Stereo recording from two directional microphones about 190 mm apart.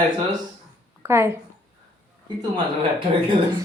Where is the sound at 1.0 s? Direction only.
15° right (ahead or behind).